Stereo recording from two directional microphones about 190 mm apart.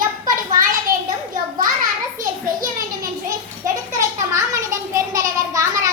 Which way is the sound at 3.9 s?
15° right (ahead or behind).